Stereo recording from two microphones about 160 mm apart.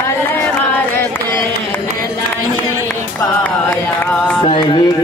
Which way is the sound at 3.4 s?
15° left (ahead or behind).